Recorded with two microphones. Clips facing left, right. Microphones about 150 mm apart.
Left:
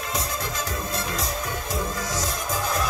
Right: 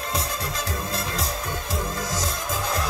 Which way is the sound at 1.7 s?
30° right (ahead or behind).